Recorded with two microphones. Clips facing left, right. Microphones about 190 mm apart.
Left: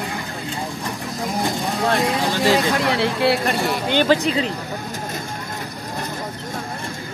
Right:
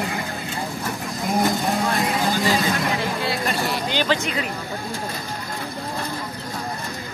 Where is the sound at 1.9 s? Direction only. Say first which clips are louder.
Left 2 dB; 75° left (ahead or behind).